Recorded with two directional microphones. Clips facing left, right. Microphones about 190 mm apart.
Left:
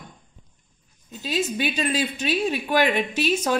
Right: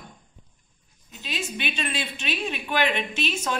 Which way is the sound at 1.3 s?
40° left (ahead or behind).